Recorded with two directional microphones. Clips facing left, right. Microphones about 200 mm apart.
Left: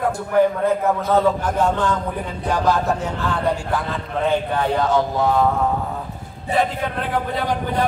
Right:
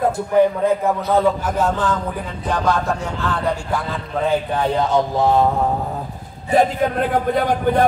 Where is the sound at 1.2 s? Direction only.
5° right (ahead or behind).